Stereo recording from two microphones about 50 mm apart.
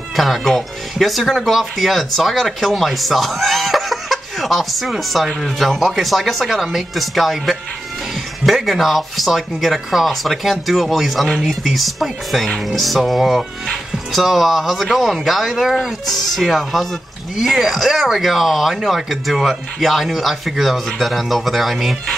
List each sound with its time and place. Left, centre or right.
0.1 s speech: centre